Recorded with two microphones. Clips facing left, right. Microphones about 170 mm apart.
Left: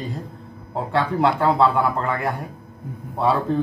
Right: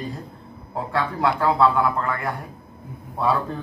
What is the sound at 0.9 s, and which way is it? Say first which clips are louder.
Speech: left 3 dB; 25° left (ahead or behind).